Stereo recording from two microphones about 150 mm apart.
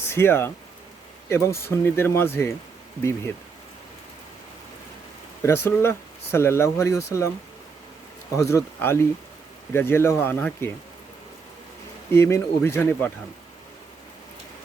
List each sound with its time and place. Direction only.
0.0 s speech: 15° left (ahead or behind)
5.4 s speech: 15° left (ahead or behind)
8.4 s speech: 20° left (ahead or behind)
12.1 s speech: 20° left (ahead or behind)